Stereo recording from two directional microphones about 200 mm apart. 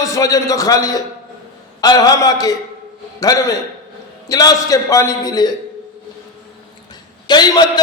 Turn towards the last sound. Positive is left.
turn(degrees=20)  # may be behind; listen again after turning